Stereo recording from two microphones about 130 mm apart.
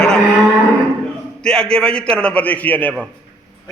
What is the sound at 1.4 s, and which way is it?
A man's voice, 5° left (ahead or behind).